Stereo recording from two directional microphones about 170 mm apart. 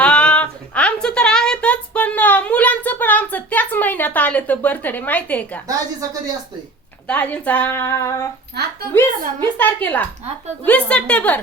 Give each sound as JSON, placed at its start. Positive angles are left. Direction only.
{"t": 0.0, "sound": "a sound", "side_deg": 5}
{"t": 5.6, "sound": "a woman's voice", "side_deg": -20}
{"t": 7.1, "sound": "speech", "side_deg": 10}
{"t": 8.6, "sound": "speech", "side_deg": -70}
{"t": 9.6, "sound": "speech", "side_deg": 10}